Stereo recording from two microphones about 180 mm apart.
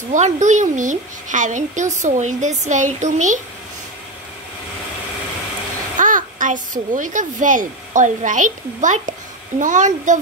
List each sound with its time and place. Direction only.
0.1 s a woman's voice: 40° right (ahead or behind)
5.9 s a child's voice: 45° right (ahead or behind)